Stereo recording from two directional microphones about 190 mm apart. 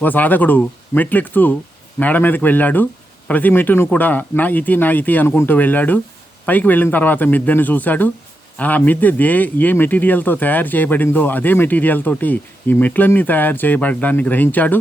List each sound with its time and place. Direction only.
0.0 s speech: 10° left (ahead or behind)